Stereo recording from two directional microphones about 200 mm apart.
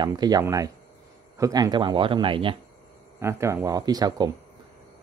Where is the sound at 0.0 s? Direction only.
20° right (ahead or behind).